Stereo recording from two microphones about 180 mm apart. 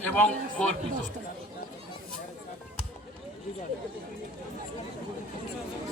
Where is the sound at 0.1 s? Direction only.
5° left (ahead or behind).